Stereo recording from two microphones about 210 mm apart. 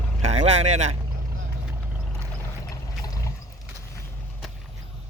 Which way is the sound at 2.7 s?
15° left (ahead or behind).